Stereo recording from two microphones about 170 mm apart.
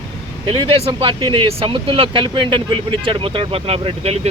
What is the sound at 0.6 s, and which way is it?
Speech, 35° right (ahead or behind).